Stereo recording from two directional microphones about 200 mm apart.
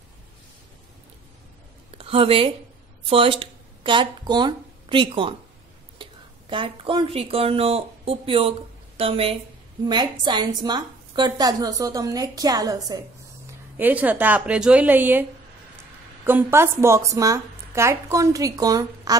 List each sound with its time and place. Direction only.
1.9 s speech: 25° right (ahead or behind)
6.5 s a woman's voice: 25° right (ahead or behind)
13.7 s speech: 10° right (ahead or behind)
16.3 s speech: 10° right (ahead or behind)